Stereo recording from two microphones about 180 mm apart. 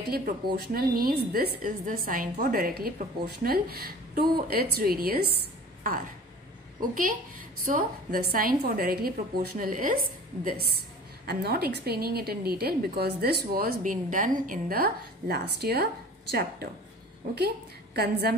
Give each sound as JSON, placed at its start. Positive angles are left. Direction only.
{"t": 0.0, "sound": "a woman's voice", "side_deg": -55}
{"t": 17.9, "sound": "a woman's voice", "side_deg": -60}